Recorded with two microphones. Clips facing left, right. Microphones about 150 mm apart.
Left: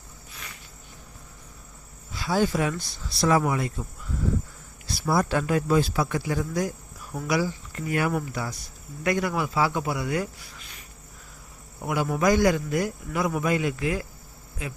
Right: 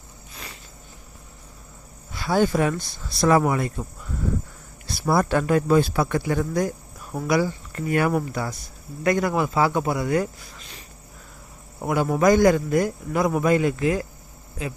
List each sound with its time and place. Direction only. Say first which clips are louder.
2.1 s a man's voice: right 3 dB; 55° right (ahead or behind)
4.9 s a man's voice: right 3 dB; 55° right (ahead or behind)
11.8 s a man's voice: right 4 dB; 45° right (ahead or behind)